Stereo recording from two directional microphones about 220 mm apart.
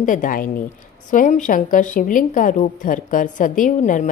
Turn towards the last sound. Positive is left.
turn(degrees=35)  # may be behind; listen again after turning